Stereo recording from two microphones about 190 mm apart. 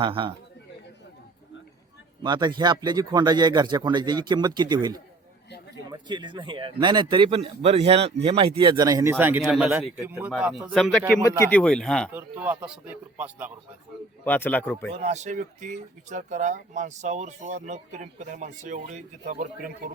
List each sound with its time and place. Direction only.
0.0 s speech: 25° right (ahead or behind)
2.2 s speech: 25° right (ahead or behind); by 12.1 s 5° left (ahead or behind)
12.1 s speech: 10° right (ahead or behind)
14.3 s speech: 10° left (ahead or behind)
14.9 s speech: 35° right (ahead or behind)